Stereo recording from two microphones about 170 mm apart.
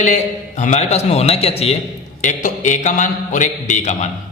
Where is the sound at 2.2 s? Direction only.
50° left (ahead or behind).